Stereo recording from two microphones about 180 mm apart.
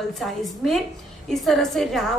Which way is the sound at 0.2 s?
Centre (ahead or behind).